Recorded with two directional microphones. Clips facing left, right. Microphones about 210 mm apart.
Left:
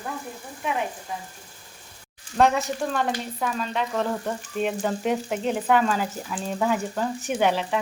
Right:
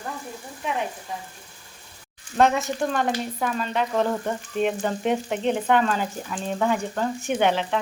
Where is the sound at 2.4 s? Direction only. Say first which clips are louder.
Right 1 dB; centre (ahead or behind).